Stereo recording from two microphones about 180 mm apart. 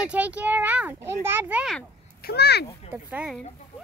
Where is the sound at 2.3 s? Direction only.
65° left (ahead or behind).